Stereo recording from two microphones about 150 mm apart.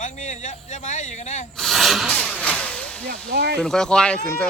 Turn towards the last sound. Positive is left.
turn(degrees=5)  # may be behind; listen again after turning